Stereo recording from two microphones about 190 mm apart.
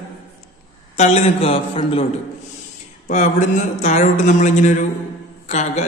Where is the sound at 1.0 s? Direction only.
35° left (ahead or behind).